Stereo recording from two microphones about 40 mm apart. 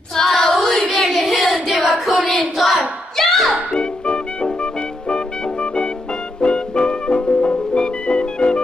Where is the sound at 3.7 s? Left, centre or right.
Left.